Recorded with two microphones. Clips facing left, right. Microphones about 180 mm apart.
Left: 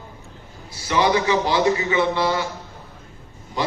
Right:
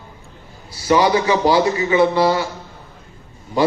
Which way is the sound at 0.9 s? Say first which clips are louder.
Right 4 dB; 35° right (ahead or behind).